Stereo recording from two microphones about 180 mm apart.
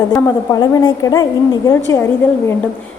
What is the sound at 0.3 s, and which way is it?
A woman's voice, 20° left (ahead or behind).